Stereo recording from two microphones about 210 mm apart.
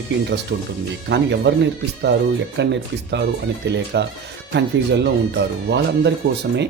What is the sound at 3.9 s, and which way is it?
Speech, 55° right (ahead or behind).